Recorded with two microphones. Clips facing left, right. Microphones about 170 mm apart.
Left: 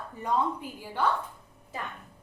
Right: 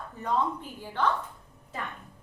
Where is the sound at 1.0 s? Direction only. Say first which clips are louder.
Even; 10° left (ahead or behind).